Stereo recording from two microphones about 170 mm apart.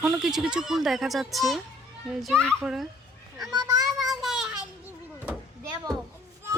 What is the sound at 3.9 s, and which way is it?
Child singing, centre (ahead or behind).